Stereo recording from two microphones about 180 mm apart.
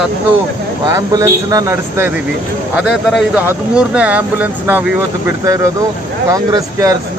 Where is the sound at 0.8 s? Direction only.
20° right (ahead or behind).